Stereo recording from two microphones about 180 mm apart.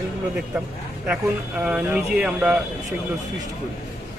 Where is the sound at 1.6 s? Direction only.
5° right (ahead or behind).